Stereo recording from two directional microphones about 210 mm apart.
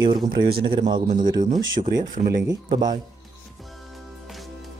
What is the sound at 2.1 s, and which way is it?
Speech, 45° right (ahead or behind).